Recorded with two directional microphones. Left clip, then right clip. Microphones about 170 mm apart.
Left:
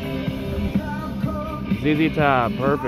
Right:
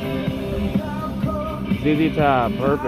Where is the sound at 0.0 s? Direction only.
35° right (ahead or behind).